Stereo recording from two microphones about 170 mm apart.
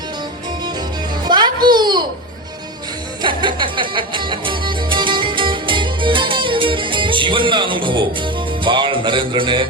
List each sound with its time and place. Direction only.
1.2 s music: 25° right (ahead or behind)
3.2 s music: 30° right (ahead or behind)